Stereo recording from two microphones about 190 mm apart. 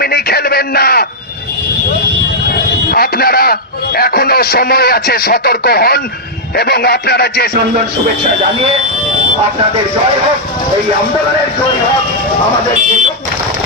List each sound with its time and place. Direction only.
0.0 s a man's voice: 55° left (ahead or behind)
2.9 s a man's voice: 55° left (ahead or behind)